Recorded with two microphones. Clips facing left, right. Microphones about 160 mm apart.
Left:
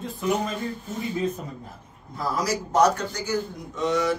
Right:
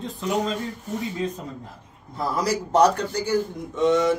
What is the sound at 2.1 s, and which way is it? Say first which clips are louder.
A man's voice: right 2 dB; 30° right (ahead or behind).